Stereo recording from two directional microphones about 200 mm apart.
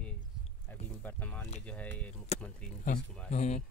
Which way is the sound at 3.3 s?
35° left (ahead or behind).